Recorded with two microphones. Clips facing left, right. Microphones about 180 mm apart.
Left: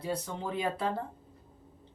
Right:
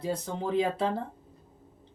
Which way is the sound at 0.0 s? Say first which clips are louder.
Right 3 dB; 25° right (ahead or behind).